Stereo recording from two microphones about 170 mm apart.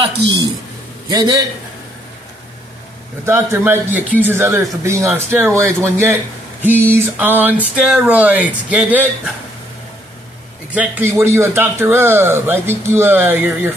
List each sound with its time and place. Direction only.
0.2 s a woman's voice: 90° right
1.1 s a man's voice: 20° right (ahead or behind)
3.3 s speech: 15° right (ahead or behind)
10.7 s speech: 10° right (ahead or behind)